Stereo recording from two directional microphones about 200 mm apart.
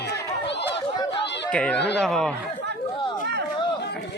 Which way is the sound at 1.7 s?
60° left (ahead or behind).